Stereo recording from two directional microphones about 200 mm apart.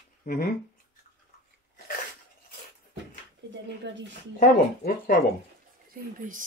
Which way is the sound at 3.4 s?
60° right (ahead or behind).